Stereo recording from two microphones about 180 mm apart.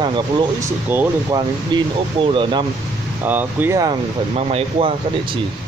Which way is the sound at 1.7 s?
25° right (ahead or behind).